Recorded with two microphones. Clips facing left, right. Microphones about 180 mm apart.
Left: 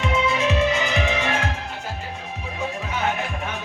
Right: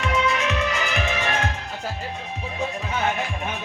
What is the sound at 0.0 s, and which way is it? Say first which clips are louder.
Music: left 1 dB; 25° left (ahead or behind).